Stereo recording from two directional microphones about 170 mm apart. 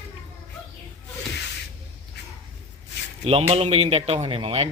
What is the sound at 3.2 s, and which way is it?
Speech, 35° right (ahead or behind).